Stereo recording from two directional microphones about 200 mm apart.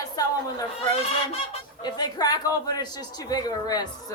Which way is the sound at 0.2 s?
20° left (ahead or behind).